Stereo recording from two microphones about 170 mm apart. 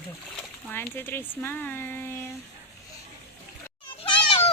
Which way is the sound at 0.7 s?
15° left (ahead or behind).